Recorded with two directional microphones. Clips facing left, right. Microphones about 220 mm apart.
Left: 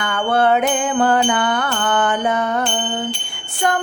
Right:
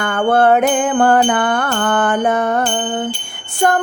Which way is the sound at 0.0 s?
50° right (ahead or behind).